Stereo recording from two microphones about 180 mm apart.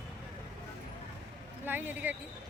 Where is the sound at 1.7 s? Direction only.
10° right (ahead or behind).